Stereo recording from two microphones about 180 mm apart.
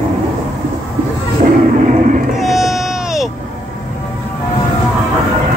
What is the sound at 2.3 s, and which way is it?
Music, centre (ahead or behind).